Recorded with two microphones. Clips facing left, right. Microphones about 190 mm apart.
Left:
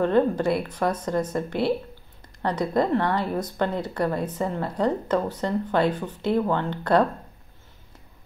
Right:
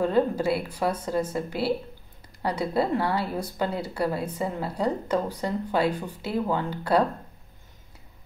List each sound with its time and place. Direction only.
0.0 s speech: 10° right (ahead or behind)